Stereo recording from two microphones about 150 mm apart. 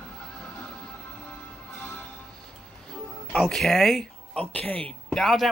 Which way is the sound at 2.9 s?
5° left (ahead or behind).